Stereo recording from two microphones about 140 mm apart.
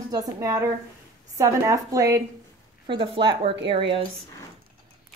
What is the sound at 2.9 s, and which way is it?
Speech, 35° right (ahead or behind).